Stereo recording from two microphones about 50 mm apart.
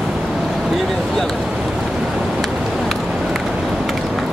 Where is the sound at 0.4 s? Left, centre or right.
Centre.